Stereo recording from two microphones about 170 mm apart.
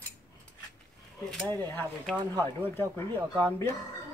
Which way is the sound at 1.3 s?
10° left (ahead or behind).